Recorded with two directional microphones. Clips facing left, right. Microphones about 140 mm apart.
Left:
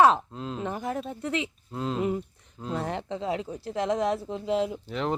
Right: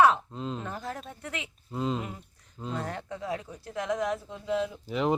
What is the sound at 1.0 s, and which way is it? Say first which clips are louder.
Speech: left 9 dB; 30° left (ahead or behind).